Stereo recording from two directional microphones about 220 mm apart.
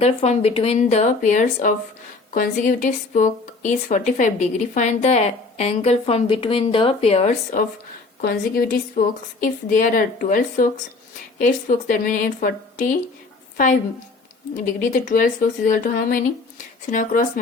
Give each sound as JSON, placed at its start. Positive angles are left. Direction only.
{"t": 0.0, "sound": "speech", "side_deg": 30}
{"t": 8.2, "sound": "speech", "side_deg": 40}
{"t": 14.5, "sound": "speech", "side_deg": 35}